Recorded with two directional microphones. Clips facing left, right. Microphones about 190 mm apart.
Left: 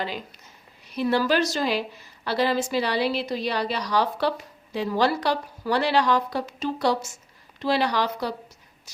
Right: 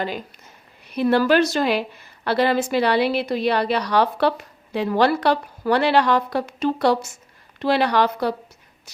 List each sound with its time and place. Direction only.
0.0 s a woman's voice: 50° right (ahead or behind)